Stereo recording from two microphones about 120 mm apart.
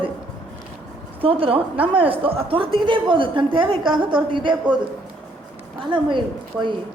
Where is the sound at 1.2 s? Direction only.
50° right (ahead or behind).